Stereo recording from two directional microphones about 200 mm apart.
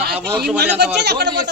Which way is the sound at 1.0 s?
55° right (ahead or behind).